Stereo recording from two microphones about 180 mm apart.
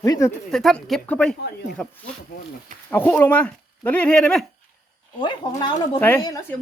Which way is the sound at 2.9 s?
10° left (ahead or behind).